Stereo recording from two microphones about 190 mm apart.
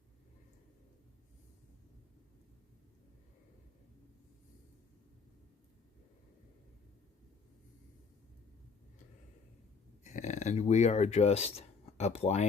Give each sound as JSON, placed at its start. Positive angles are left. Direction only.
{"t": 10.0, "sound": "speech", "side_deg": 40}